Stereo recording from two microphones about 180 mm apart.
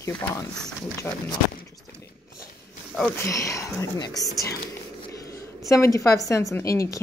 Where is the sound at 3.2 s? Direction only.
15° left (ahead or behind).